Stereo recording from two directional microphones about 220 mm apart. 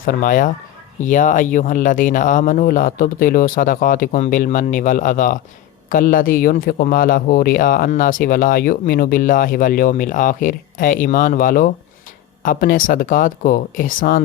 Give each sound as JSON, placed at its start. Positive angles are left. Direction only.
{"t": 0.0, "sound": "speech", "side_deg": 40}